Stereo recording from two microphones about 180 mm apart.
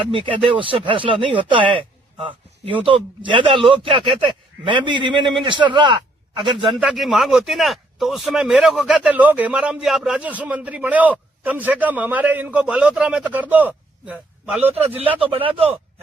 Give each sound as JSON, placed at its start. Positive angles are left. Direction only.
{"t": 0.1, "sound": "a man's voice", "side_deg": -30}
{"t": 6.7, "sound": "speech", "side_deg": 0}
{"t": 14.7, "sound": "a man's voice", "side_deg": -35}